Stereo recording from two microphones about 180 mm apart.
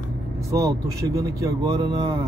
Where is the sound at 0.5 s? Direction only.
15° right (ahead or behind).